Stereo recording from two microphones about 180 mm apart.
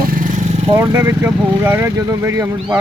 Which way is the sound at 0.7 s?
15° right (ahead or behind).